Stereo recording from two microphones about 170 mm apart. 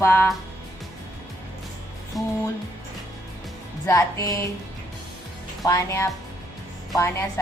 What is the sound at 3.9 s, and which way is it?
Speech, 20° left (ahead or behind).